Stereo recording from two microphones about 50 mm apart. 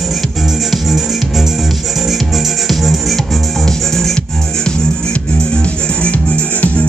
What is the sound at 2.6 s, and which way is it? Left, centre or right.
Music, centre.